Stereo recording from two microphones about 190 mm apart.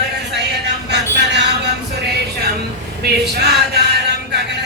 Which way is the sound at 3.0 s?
60° right (ahead or behind).